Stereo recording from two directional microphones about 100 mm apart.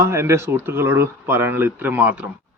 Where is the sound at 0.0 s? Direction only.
25° right (ahead or behind).